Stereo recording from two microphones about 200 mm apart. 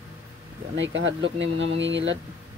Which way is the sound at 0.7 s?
70° right (ahead or behind).